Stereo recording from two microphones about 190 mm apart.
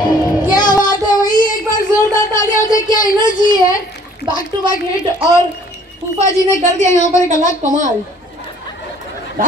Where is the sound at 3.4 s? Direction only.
20° left (ahead or behind).